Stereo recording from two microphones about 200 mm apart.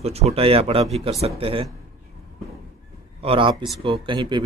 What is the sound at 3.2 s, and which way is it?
Speech, 25° right (ahead or behind).